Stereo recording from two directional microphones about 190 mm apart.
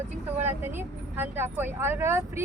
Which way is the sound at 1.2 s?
10° right (ahead or behind).